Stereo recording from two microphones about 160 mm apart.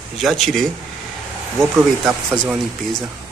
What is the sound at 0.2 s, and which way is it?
Speech, centre (ahead or behind).